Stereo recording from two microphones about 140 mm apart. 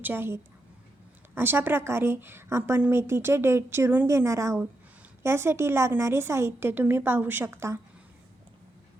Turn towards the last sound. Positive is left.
turn(degrees=-15)  # may be behind; listen again after turning